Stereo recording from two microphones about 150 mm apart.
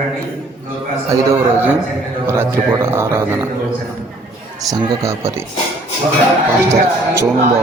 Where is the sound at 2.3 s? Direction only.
15° right (ahead or behind).